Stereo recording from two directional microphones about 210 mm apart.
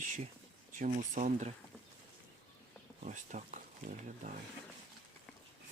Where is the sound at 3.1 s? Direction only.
35° right (ahead or behind).